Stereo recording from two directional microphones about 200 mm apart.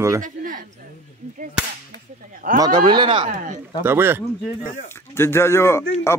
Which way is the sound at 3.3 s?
40° right (ahead or behind).